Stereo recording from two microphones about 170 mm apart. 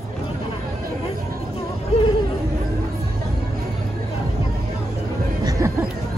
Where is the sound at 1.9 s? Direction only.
35° left (ahead or behind).